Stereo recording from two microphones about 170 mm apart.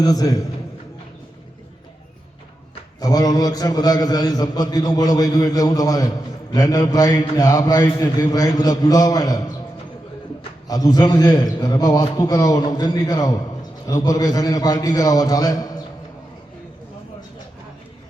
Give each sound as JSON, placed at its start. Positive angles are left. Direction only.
{"t": 0.0, "sound": "a man's voice", "side_deg": 20}
{"t": 3.0, "sound": "a man's voice", "side_deg": 20}
{"t": 10.7, "sound": "a man's voice", "side_deg": 20}